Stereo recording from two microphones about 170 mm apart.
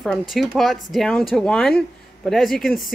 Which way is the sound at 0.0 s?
Centre (ahead or behind).